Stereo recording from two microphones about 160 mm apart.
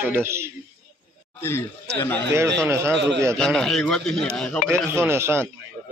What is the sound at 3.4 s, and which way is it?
Speech, 5° left (ahead or behind).